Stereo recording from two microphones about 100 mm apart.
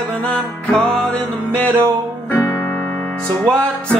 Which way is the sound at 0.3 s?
10° left (ahead or behind).